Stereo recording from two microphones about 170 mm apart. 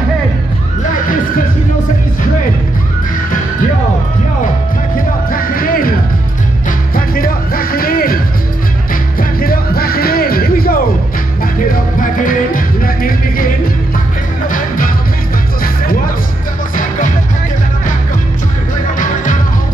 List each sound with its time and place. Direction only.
5.3 s music: 55° left (ahead or behind)
7.0 s music: 60° left (ahead or behind)
9.4 s music: 60° left (ahead or behind)